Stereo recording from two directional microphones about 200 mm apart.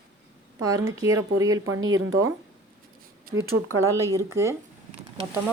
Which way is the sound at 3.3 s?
45° right (ahead or behind).